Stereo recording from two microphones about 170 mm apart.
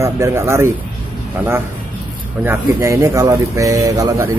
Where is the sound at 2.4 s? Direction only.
15° right (ahead or behind).